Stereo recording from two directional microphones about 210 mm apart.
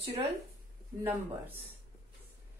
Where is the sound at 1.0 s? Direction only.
10° right (ahead or behind).